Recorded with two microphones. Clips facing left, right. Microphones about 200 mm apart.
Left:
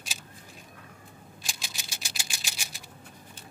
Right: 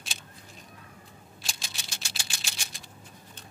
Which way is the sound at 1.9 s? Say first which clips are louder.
Even; 10° left (ahead or behind).